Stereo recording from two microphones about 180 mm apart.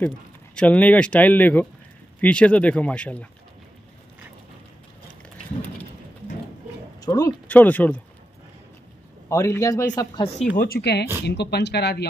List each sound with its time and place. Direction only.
0.6 s speech: 10° left (ahead or behind)
7.0 s speech: 20° left (ahead or behind)
7.4 s speech: 10° left (ahead or behind)
9.3 s speech: 15° left (ahead or behind)
10.5 s speech: 55° left (ahead or behind)